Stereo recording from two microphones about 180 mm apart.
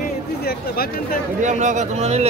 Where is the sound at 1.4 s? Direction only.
45° right (ahead or behind).